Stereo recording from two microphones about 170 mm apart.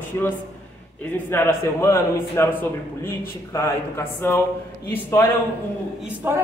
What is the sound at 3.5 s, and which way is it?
Speech, 15° left (ahead or behind).